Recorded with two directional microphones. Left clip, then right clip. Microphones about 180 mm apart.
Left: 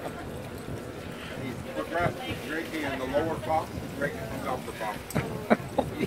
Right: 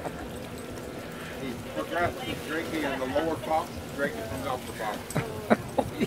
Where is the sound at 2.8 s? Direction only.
45° left (ahead or behind).